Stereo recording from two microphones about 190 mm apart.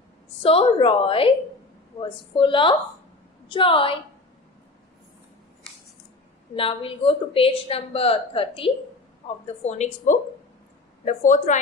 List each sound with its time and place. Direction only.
0.4 s a woman's voice: 30° left (ahead or behind)
6.5 s a woman's voice: 30° left (ahead or behind)